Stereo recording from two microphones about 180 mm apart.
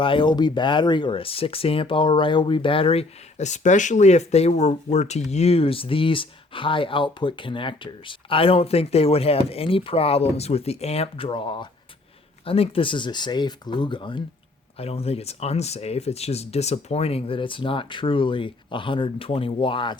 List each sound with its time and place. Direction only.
0.0 s speech: 25° left (ahead or behind)